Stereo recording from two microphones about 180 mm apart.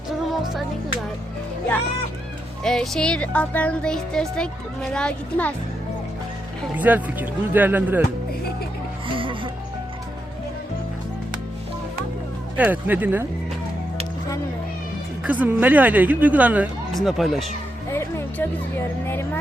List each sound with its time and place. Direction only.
2.6 s speech: 5° left (ahead or behind)
6.7 s speech: 10° right (ahead or behind)
9.0 s music: 30° right (ahead or behind)
12.5 s speech: 10° right (ahead or behind)
15.2 s speech: 10° right (ahead or behind)
17.9 s music: 15° left (ahead or behind)
19.0 s speech: 10° left (ahead or behind)